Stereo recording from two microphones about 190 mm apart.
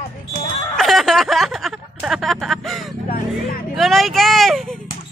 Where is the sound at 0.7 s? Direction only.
Centre (ahead or behind).